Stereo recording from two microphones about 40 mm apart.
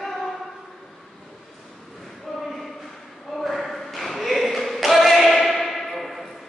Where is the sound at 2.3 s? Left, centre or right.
Centre.